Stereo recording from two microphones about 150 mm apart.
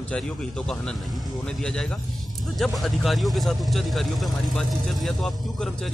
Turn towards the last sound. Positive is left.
turn(degrees=0)  # may be behind; listen again after turning